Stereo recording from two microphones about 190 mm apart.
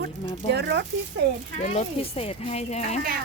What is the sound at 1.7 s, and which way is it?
Speech, 35° left (ahead or behind).